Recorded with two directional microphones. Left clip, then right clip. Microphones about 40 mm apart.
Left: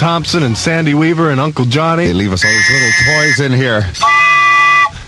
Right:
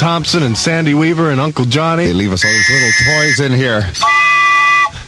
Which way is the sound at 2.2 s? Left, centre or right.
Left.